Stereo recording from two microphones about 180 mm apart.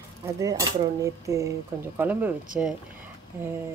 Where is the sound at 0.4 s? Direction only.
20° right (ahead or behind).